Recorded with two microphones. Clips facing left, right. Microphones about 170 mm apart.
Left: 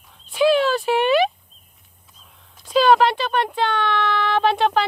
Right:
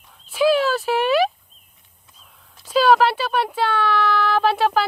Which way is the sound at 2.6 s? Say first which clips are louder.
Even; 5° right (ahead or behind).